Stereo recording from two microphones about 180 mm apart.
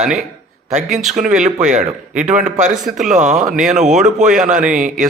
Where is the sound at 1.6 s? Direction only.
45° right (ahead or behind).